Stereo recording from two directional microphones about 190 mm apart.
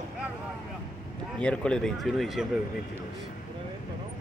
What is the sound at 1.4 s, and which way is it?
Speech, 5° left (ahead or behind).